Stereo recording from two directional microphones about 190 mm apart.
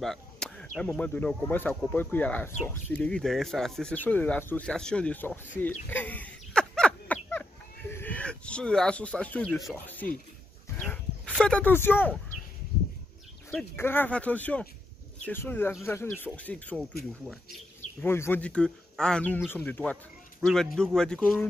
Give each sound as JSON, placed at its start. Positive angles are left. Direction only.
{"t": 0.0, "sound": "speech", "side_deg": 5}
{"t": 5.6, "sound": "fowl", "side_deg": 10}
{"t": 7.9, "sound": "speech", "side_deg": 10}
{"t": 10.8, "sound": "a sound", "side_deg": 5}
{"t": 13.5, "sound": "speech", "side_deg": 10}
{"t": 18.0, "sound": "speech", "side_deg": 10}